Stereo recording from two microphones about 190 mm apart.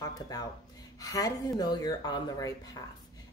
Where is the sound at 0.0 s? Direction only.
20° left (ahead or behind).